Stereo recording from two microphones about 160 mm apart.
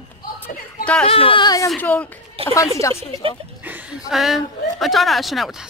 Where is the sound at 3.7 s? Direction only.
5° right (ahead or behind).